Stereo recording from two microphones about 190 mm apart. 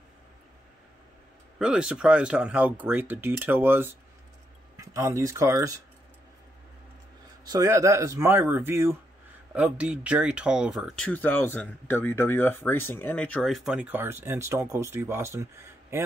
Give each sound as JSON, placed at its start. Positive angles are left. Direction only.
{"t": 1.6, "sound": "speech", "side_deg": -5}
{"t": 7.4, "sound": "speech", "side_deg": -20}
{"t": 11.1, "sound": "speech", "side_deg": 10}